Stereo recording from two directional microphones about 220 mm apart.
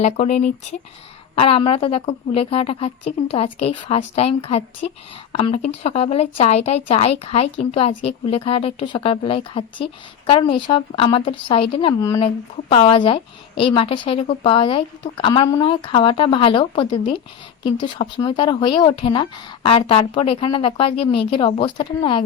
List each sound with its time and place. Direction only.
0.0 s a woman's voice: 30° left (ahead or behind)